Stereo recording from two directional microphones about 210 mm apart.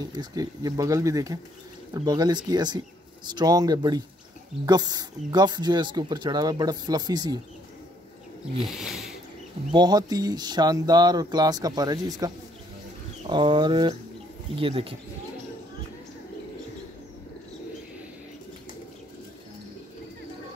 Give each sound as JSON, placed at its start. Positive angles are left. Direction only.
{"t": 0.1, "sound": "speech", "side_deg": -20}
{"t": 8.6, "sound": "speech", "side_deg": 0}
{"t": 9.7, "sound": "speech", "side_deg": -20}
{"t": 13.3, "sound": "speech", "side_deg": -20}